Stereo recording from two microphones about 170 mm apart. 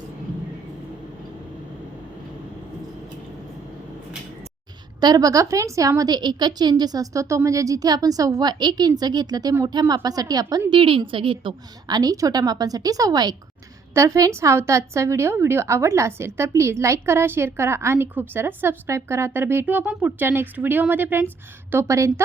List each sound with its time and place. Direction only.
4.9 s a woman's voice: 25° right (ahead or behind)